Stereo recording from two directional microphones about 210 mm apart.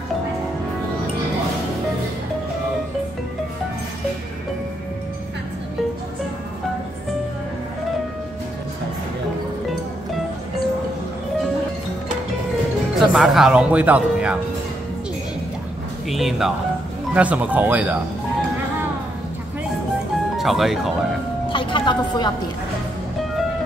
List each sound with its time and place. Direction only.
13.1 s speech: centre (ahead or behind)
16.1 s speech: centre (ahead or behind)
20.3 s speech: centre (ahead or behind)
21.5 s a sound: 25° left (ahead or behind)